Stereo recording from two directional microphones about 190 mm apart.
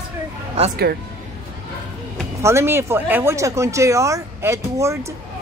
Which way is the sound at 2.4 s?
15° right (ahead or behind).